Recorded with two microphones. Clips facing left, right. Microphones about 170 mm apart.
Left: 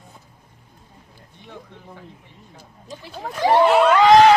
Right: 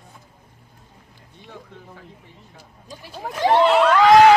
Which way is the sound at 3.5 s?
10° left (ahead or behind).